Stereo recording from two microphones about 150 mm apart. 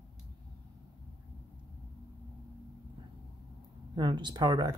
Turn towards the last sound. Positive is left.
turn(degrees=-25)  # may be behind; listen again after turning